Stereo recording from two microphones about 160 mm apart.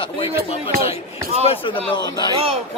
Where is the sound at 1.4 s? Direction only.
35° left (ahead or behind).